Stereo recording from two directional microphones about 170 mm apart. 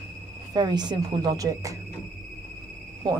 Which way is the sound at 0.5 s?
25° right (ahead or behind).